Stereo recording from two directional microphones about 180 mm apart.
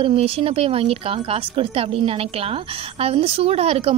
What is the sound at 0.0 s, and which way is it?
A woman's voice, 30° right (ahead or behind).